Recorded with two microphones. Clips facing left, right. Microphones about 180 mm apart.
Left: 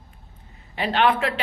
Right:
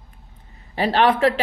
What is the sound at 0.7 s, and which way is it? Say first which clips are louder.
Speech: right 3 dB; 35° right (ahead or behind).